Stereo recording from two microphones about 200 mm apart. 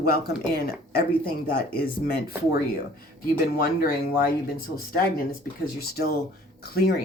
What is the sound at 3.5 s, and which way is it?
Speech, 50° left (ahead or behind).